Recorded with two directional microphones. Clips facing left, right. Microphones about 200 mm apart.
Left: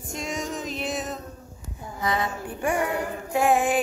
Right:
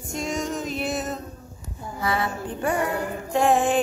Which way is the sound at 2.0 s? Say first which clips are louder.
Right 1 dB; 20° left (ahead or behind).